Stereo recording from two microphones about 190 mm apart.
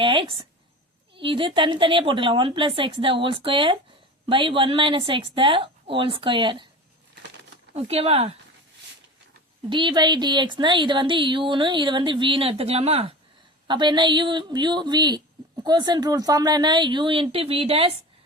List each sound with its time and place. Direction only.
0.0 s speech: 25° right (ahead or behind)
7.8 s speech: 30° right (ahead or behind)
9.6 s speech: 25° right (ahead or behind)